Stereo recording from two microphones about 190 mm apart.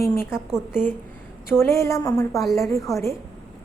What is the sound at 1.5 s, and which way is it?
A woman's voice, 15° left (ahead or behind).